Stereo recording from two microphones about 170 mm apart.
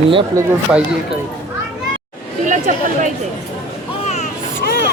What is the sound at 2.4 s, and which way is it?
Chatter, 50° right (ahead or behind).